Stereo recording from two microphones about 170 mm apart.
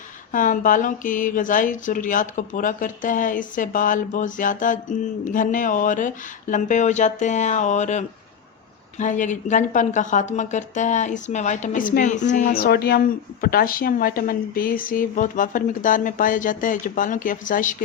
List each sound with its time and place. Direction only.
0.3 s speech: 50° left (ahead or behind)